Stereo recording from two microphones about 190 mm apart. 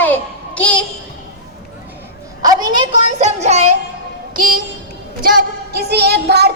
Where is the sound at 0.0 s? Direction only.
10° left (ahead or behind).